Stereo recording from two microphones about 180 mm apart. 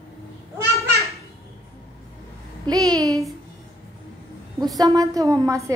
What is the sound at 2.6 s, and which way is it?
Speech, 20° right (ahead or behind).